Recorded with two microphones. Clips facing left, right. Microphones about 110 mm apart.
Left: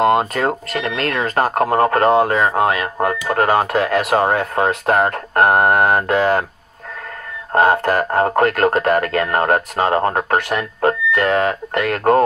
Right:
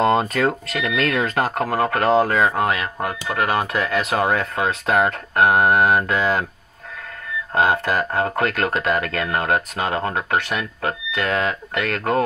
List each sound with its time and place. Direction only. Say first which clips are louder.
0.5 s speech: left 2 dB; 45° left (ahead or behind)
2.3 s speech: left 3 dB; 45° left (ahead or behind)
3.7 s speech: left 5 dB; 60° left (ahead or behind)
7.5 s speech: left 5 dB; 45° left (ahead or behind)